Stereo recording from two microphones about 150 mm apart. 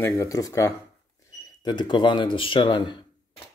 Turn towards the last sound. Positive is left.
turn(degrees=30)  # may be behind; listen again after turning